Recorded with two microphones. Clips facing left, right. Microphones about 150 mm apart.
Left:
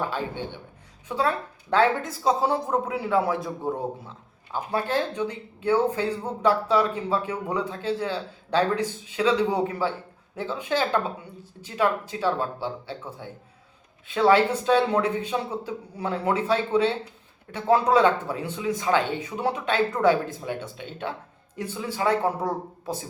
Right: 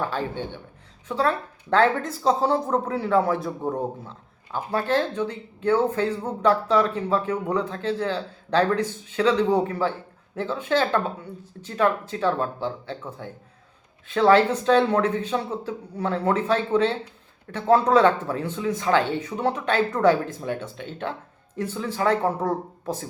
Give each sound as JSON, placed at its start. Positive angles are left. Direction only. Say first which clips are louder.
{"t": 0.0, "sound": "speech", "louder": "right 2 dB", "side_deg": 15}
{"t": 4.7, "sound": "speech", "louder": "right 3 dB", "side_deg": 15}